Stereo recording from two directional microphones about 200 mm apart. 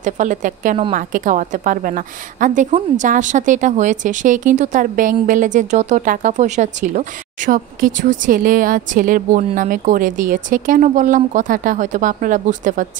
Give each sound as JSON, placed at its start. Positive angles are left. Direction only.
{"t": 0.0, "sound": "a woman's voice", "side_deg": -40}